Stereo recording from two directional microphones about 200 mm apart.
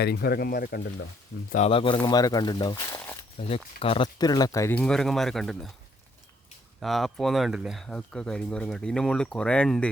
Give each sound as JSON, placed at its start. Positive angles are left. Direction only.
{"t": 0.0, "sound": "speech", "side_deg": 55}
{"t": 1.5, "sound": "speech", "side_deg": 30}
{"t": 3.3, "sound": "speech", "side_deg": 30}
{"t": 6.7, "sound": "speech", "side_deg": 0}